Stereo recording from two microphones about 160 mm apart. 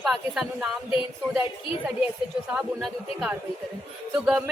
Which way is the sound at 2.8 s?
Centre (ahead or behind).